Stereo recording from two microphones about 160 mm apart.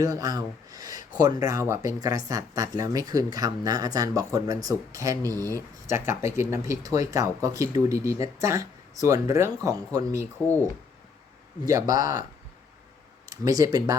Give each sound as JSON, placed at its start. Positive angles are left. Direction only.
{"t": 0.0, "sound": "a sound", "side_deg": -20}
{"t": 1.2, "sound": "speech", "side_deg": -25}
{"t": 11.7, "sound": "speech", "side_deg": -20}
{"t": 13.3, "sound": "speech", "side_deg": -20}